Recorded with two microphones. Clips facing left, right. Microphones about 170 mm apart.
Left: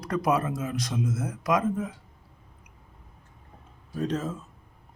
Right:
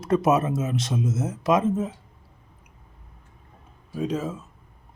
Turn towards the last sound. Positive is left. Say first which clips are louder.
# right 2 dB
turn(degrees=-10)  # may be behind; listen again after turning